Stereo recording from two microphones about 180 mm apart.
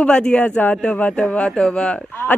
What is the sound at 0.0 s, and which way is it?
Speech, 5° left (ahead or behind).